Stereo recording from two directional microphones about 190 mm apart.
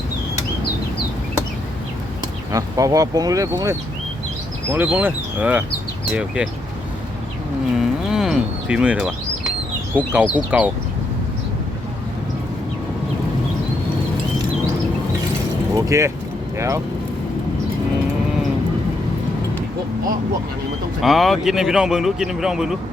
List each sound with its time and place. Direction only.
2.5 s speech: 15° right (ahead or behind)
7.8 s a sound: 5° right (ahead or behind)
10.1 s speech: 10° right (ahead or behind)
15.7 s vehicle: 15° right (ahead or behind)
16.6 s speech: 15° right (ahead or behind)
21.0 s speech: centre (ahead or behind)